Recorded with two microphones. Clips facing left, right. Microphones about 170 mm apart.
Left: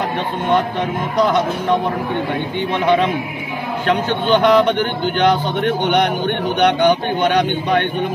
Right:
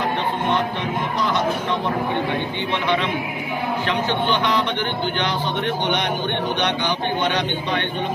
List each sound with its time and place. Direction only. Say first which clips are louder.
3.8 s a man's voice: left 7 dB; 50° left (ahead or behind)